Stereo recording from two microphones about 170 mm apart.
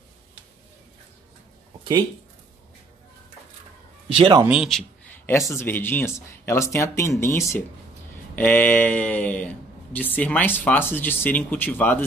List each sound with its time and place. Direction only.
4.1 s speech: 30° right (ahead or behind)
4.5 s a sound: centre (ahead or behind)
5.6 s speech: 10° left (ahead or behind)